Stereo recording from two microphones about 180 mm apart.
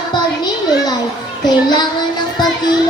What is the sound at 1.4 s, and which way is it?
Music, 25° left (ahead or behind).